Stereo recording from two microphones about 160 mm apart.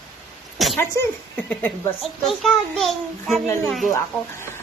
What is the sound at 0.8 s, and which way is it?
Speech, 15° left (ahead or behind).